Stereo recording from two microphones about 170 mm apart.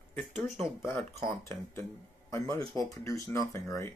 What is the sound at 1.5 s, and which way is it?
A man's voice, 15° left (ahead or behind).